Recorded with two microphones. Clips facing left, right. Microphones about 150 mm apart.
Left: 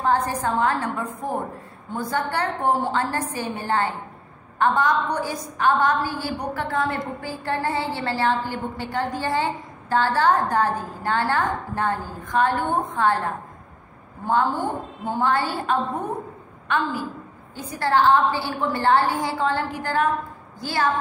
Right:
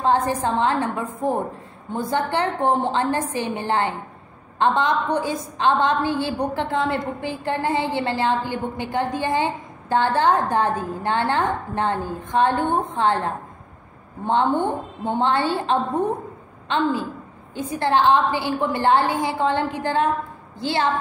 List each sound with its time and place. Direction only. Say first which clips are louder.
0.0 s a woman's voice: right 2 dB; 20° right (ahead or behind)